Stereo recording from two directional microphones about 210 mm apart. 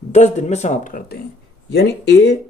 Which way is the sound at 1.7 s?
55° left (ahead or behind).